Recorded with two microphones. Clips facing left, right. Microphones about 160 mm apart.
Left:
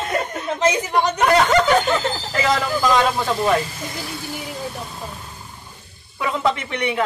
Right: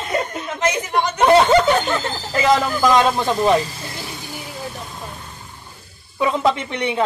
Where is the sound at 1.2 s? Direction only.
25° right (ahead or behind).